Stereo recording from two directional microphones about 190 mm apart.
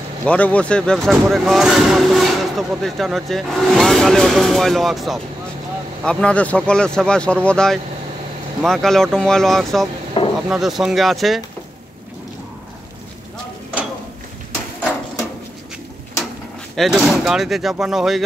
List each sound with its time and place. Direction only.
0.2 s speech: 5° left (ahead or behind)
10.2 s a sound: 25° left (ahead or behind)
10.5 s speech: centre (ahead or behind)
16.7 s speech: centre (ahead or behind)